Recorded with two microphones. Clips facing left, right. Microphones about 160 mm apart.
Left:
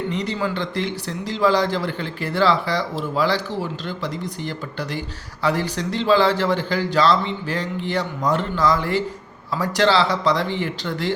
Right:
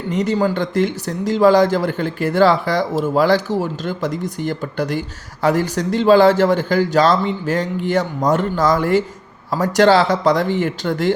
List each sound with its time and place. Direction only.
0.1 s speech: 45° right (ahead or behind)